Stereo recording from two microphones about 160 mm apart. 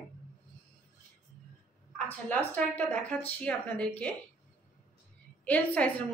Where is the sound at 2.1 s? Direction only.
10° left (ahead or behind).